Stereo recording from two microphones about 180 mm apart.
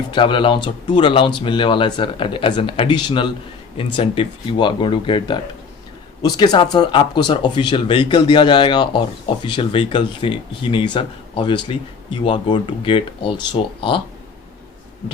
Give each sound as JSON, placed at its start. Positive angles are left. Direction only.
{"t": 0.1, "sound": "speech", "side_deg": 25}